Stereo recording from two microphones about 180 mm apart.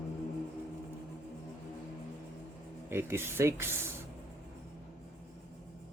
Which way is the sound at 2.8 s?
15° right (ahead or behind).